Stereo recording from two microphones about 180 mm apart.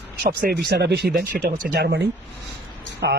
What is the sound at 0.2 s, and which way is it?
Speech, 55° right (ahead or behind).